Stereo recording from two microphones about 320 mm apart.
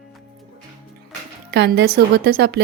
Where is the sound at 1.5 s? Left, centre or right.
Right.